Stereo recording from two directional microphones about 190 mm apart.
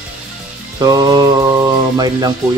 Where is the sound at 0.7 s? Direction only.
20° right (ahead or behind).